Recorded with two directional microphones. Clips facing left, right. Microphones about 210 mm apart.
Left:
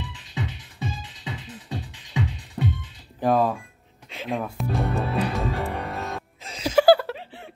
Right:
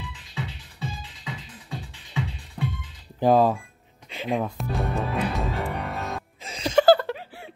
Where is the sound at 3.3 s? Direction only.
25° right (ahead or behind).